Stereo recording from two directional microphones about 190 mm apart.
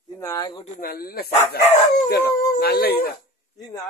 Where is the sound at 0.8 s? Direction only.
50° left (ahead or behind).